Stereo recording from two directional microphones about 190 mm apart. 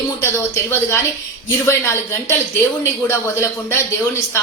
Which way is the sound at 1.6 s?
10° left (ahead or behind).